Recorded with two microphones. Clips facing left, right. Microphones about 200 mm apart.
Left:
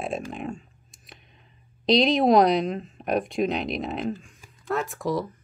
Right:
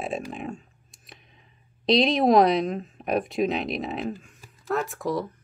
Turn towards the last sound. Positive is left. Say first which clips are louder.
# left 1 dB
turn(degrees=0)  # may be behind; listen again after turning